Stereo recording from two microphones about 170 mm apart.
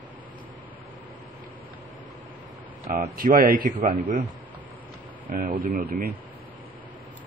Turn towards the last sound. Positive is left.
turn(degrees=-60)  # may be behind; listen again after turning